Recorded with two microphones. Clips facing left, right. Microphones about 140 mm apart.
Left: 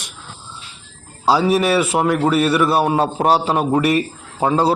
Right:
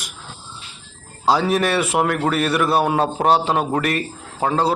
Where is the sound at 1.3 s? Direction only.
5° left (ahead or behind).